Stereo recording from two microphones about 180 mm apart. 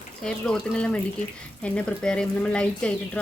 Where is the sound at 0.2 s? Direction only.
5° left (ahead or behind).